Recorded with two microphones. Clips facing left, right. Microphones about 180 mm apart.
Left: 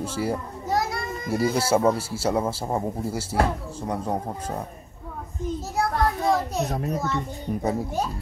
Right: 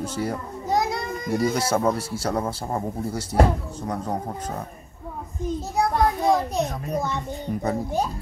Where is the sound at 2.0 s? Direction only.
30° left (ahead or behind).